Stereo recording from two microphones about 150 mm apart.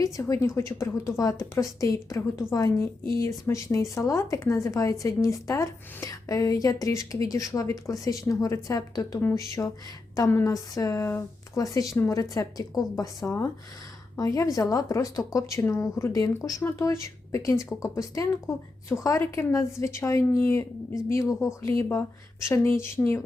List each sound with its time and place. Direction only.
0.0 s a woman's voice: 20° left (ahead or behind)